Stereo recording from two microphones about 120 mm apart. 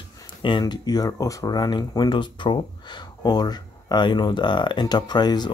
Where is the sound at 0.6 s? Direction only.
30° left (ahead or behind).